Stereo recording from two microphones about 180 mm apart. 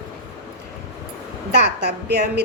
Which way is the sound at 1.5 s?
70° right (ahead or behind).